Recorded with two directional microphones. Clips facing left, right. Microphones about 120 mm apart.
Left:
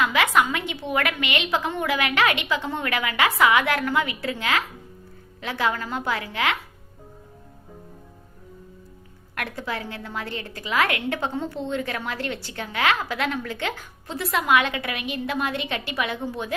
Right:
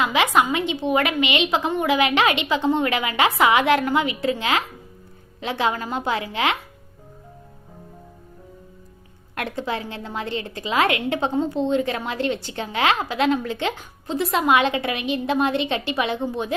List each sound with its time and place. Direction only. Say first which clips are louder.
0.0 s a woman's voice: right 2 dB; 20° right (ahead or behind)
9.3 s a woman's voice: right 4 dB; 25° right (ahead or behind)